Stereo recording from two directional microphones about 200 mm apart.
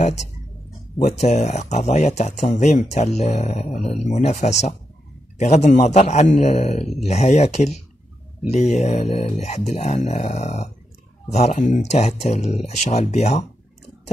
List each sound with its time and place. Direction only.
0.0 s speech: 35° left (ahead or behind)